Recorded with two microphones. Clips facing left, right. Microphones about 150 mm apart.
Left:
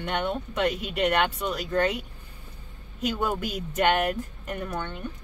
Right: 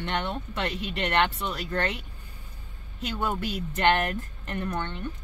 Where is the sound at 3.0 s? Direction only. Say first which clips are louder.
Left 2 dB; 10° left (ahead or behind).